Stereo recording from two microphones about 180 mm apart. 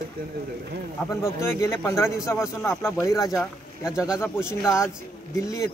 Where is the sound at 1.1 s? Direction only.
15° left (ahead or behind).